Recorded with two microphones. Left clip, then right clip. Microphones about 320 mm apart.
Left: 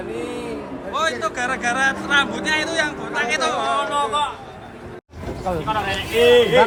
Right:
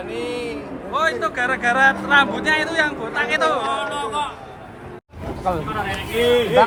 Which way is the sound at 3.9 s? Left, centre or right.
Left.